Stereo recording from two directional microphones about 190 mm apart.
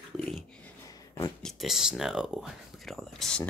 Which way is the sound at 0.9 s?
20° left (ahead or behind).